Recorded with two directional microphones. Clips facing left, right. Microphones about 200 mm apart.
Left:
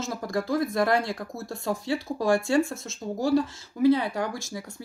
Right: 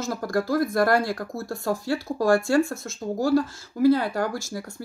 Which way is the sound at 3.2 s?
Centre (ahead or behind).